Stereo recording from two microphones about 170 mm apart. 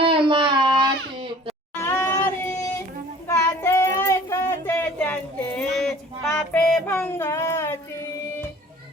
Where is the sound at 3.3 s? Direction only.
15° left (ahead or behind).